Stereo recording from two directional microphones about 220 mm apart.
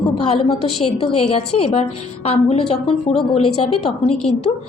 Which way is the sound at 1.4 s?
90° left.